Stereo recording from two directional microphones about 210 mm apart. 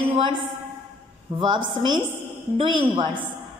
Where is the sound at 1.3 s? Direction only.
20° right (ahead or behind).